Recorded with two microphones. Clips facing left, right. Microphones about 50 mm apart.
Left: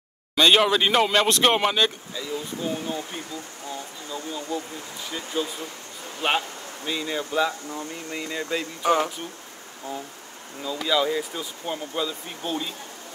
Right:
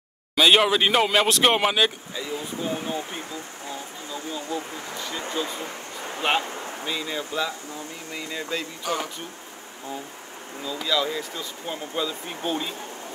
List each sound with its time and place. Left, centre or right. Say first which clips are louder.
0.4 s speech: even; centre
4.1 s speech: left 1 dB; centre
5.6 s a sound: right 3 dB; right
6.9 s speech: left 3 dB; centre
8.8 s speech: left 9 dB; left
10.6 s speech: left 2 dB; centre
11.9 s speech: even; centre